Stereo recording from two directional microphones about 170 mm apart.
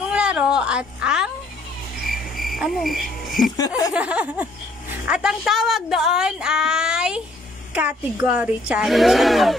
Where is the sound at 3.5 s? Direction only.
20° left (ahead or behind).